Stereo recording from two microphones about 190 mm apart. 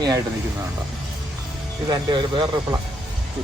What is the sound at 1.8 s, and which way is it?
Speech, 25° right (ahead or behind).